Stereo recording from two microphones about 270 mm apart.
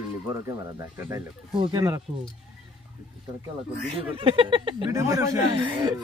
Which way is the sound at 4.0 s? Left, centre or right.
Centre.